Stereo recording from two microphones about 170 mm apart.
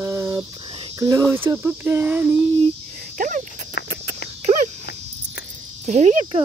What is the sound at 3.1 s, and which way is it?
Cricket, 50° right (ahead or behind).